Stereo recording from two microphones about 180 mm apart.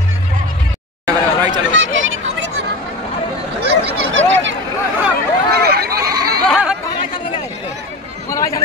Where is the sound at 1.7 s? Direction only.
90° right.